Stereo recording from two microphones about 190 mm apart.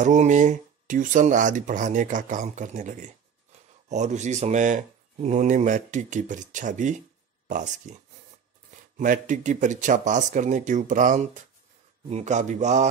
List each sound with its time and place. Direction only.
0.0 s speech: 40° right (ahead or behind)
8.9 s speech: 45° right (ahead or behind)